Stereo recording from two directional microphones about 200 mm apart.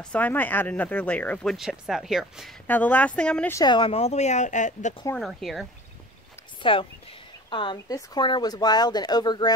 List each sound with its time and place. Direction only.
0.1 s speech: 10° left (ahead or behind)
3.5 s speech: 20° left (ahead or behind); by 4.9 s 40° left (ahead or behind)
5.1 s speech: centre (ahead or behind)
6.6 s speech: 25° left (ahead or behind)